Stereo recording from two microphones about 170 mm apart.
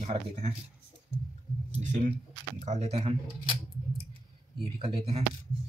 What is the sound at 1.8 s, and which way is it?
Speech, 45° right (ahead or behind).